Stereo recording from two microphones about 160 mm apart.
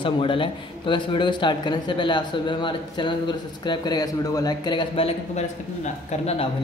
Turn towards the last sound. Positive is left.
turn(degrees=35)  # may be behind; listen again after turning